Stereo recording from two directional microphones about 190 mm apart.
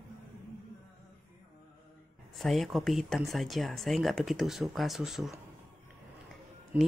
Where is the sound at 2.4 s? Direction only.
Centre (ahead or behind).